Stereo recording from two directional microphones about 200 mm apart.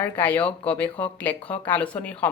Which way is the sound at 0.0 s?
10° left (ahead or behind).